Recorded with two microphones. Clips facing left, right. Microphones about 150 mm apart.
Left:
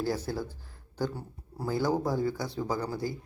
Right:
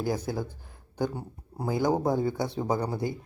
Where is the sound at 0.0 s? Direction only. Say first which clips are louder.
Right 2 dB; 15° right (ahead or behind).